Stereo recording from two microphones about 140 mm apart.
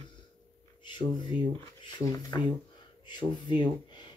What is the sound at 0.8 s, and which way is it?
Speech, 35° left (ahead or behind).